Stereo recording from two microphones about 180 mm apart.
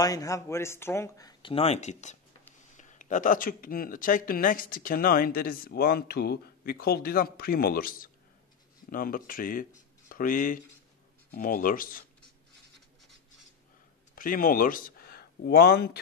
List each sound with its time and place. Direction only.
0.0 s speech: 20° left (ahead or behind); by 12.0 s 50° left (ahead or behind)
14.1 s speech: 50° left (ahead or behind)